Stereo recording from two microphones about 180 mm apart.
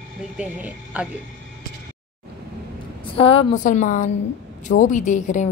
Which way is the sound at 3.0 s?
30° left (ahead or behind).